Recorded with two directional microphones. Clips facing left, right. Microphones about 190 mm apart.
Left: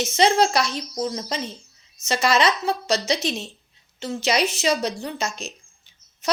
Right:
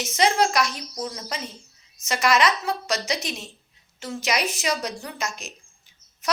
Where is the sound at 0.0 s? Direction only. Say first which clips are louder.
Left 3 dB; 25° left (ahead or behind).